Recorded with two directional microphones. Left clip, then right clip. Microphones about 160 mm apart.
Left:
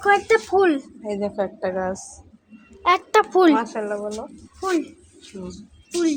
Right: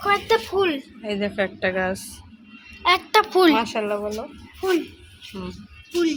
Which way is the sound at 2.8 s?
45° left (ahead or behind).